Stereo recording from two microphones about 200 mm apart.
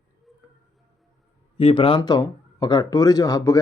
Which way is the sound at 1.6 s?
25° left (ahead or behind).